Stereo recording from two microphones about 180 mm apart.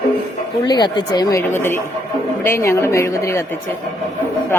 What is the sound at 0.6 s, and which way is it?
A woman's voice, 25° left (ahead or behind).